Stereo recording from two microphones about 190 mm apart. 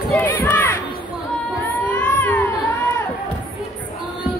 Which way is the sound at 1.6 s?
10° left (ahead or behind).